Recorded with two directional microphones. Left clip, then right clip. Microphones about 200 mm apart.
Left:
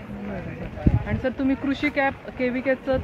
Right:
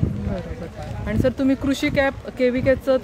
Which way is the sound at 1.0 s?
80° right.